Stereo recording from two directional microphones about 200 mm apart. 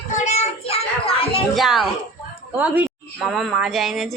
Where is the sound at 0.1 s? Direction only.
35° left (ahead or behind).